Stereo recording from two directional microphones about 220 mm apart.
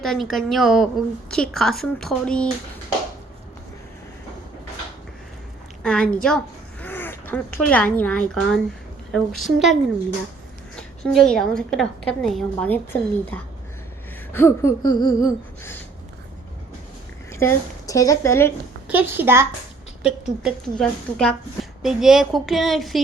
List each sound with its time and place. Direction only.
0.0 s a woman's voice: centre (ahead or behind)
5.8 s a woman's voice: 5° left (ahead or behind)
6.8 s a sound: 10° left (ahead or behind)
7.9 s a woman's voice: 5° left (ahead or behind)
10.8 s a woman's voice: centre (ahead or behind)
14.3 s a sound: 10° left (ahead or behind)
17.3 s speech: 10° left (ahead or behind)
18.9 s a woman's voice: 10° right (ahead or behind)